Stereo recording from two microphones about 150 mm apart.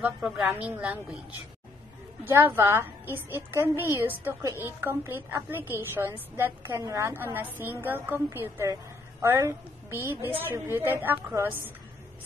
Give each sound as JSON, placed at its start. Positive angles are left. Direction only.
{"t": 0.0, "sound": "a woman's voice", "side_deg": -5}
{"t": 2.2, "sound": "a woman's voice", "side_deg": -15}